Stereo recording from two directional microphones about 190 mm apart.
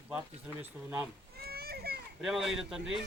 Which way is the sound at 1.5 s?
55° right (ahead or behind).